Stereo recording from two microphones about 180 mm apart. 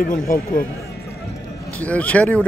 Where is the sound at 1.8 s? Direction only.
10° left (ahead or behind).